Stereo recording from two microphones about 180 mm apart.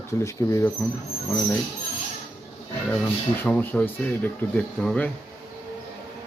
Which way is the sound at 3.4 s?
10° left (ahead or behind).